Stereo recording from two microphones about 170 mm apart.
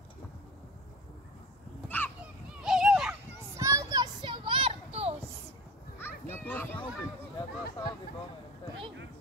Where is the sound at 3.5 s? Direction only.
15° right (ahead or behind); by 5.1 s 35° right (ahead or behind).